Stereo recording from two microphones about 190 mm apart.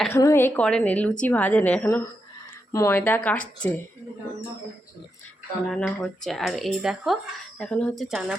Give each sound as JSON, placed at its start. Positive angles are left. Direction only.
{"t": 0.1, "sound": "a woman's voice", "side_deg": 15}
{"t": 5.7, "sound": "speech", "side_deg": 5}